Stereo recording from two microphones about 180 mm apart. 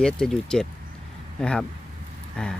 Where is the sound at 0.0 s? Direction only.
5° left (ahead or behind).